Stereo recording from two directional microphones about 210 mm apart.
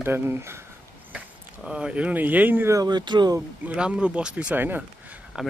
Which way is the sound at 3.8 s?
5° right (ahead or behind).